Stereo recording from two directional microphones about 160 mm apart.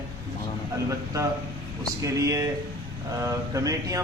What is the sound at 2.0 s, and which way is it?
Speech, 20° right (ahead or behind).